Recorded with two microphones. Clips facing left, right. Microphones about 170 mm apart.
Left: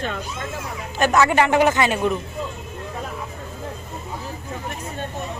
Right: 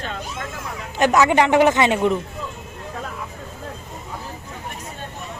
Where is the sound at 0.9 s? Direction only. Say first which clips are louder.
Right 1 dB; 20° right (ahead or behind).